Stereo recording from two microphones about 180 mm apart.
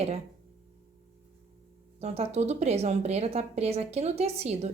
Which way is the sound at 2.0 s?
35° right (ahead or behind).